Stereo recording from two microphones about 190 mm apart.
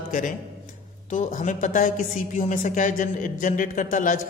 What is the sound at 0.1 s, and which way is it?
A man's voice, 45° left (ahead or behind).